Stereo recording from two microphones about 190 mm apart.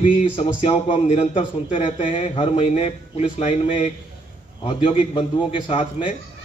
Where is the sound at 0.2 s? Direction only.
30° left (ahead or behind).